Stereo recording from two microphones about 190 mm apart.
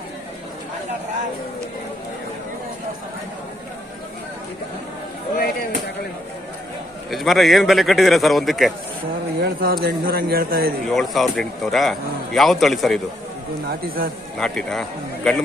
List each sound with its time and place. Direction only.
7.1 s speech: centre (ahead or behind)
9.4 s a man's voice: 50° right (ahead or behind)
10.9 s speech: centre (ahead or behind)
13.7 s a man's voice: 50° right (ahead or behind)
14.4 s speech: 5° left (ahead or behind)